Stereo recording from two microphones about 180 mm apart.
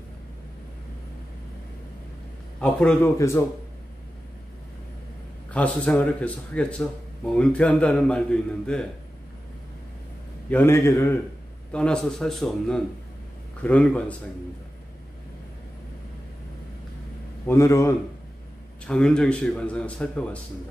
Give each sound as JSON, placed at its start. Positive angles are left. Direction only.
{"t": 2.6, "sound": "a man's voice", "side_deg": 5}
{"t": 5.5, "sound": "a man's voice", "side_deg": 5}
{"t": 10.5, "sound": "a man's voice", "side_deg": 10}
{"t": 17.5, "sound": "a man's voice", "side_deg": 15}
{"t": 18.9, "sound": "a man's voice", "side_deg": 5}